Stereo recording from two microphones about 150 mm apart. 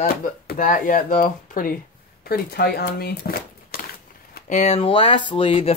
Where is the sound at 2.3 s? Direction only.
90° left.